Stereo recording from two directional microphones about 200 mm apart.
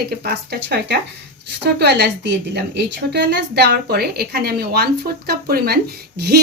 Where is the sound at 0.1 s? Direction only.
50° right (ahead or behind).